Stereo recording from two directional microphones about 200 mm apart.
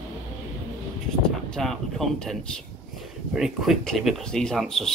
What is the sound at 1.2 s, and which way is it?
Speech, 5° left (ahead or behind).